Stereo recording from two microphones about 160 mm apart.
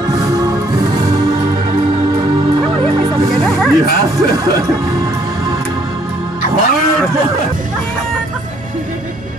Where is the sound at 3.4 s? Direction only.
Centre (ahead or behind).